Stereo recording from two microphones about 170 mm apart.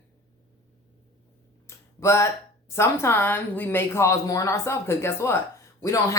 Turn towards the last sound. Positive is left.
turn(degrees=15)  # may be behind; listen again after turning